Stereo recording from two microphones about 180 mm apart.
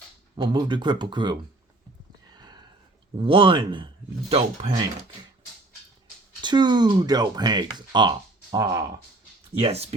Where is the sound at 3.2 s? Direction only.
30° right (ahead or behind).